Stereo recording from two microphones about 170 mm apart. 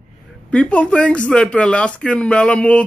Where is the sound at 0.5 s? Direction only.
5° left (ahead or behind).